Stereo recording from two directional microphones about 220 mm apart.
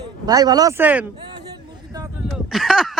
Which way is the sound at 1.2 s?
15° right (ahead or behind).